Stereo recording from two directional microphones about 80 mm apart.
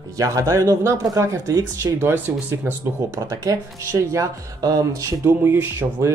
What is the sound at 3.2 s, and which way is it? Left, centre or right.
Speech, right.